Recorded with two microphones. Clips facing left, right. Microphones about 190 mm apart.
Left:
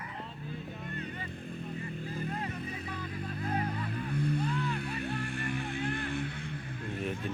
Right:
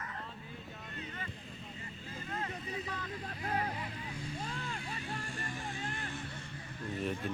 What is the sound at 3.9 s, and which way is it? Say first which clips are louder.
Music: left 10 dB; 60° left (ahead or behind).